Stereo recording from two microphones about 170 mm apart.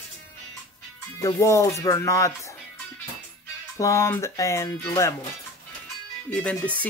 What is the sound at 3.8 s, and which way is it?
Speech, 15° left (ahead or behind).